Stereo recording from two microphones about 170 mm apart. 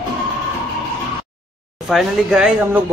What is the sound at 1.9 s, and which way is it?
Speech, 5° right (ahead or behind).